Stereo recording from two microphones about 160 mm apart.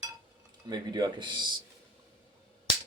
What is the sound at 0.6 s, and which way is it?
Speech, 25° right (ahead or behind).